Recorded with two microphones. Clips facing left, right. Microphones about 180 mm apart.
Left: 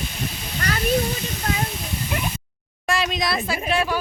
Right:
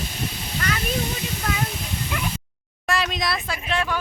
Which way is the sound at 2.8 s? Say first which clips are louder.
Left 1 dB; centre (ahead or behind).